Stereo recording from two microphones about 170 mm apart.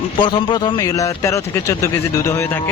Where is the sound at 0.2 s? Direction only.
25° left (ahead or behind).